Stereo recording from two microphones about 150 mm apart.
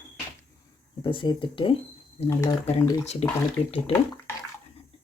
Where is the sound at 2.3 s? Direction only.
20° left (ahead or behind).